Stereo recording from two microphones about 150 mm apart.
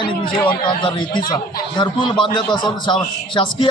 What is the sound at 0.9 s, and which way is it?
A man's voice, 30° left (ahead or behind).